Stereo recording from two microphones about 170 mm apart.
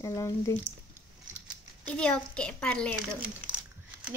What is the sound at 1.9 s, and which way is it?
A child's voice, 5° left (ahead or behind).